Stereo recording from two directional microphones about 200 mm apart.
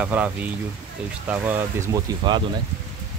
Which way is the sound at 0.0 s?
5° right (ahead or behind).